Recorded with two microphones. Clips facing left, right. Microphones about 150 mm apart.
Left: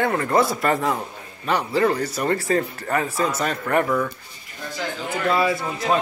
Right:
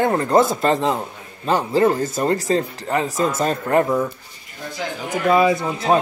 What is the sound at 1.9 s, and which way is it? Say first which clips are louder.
Speech: right 2 dB; 45° right (ahead or behind).